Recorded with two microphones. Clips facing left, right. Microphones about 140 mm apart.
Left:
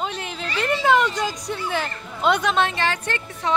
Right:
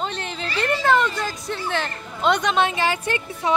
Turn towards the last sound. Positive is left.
turn(degrees=-10)  # may be behind; listen again after turning